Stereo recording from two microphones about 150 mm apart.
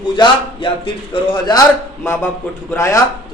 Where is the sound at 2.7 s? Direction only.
20° left (ahead or behind).